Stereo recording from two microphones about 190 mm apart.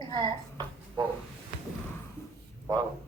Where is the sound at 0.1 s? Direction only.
20° right (ahead or behind).